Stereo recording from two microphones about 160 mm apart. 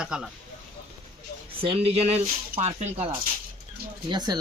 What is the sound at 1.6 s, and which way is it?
Speech, 35° right (ahead or behind).